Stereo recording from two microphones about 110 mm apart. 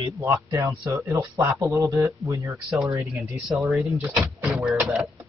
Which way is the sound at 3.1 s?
Centre (ahead or behind).